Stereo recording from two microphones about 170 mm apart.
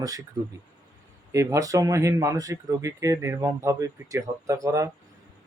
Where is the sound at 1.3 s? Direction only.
20° right (ahead or behind).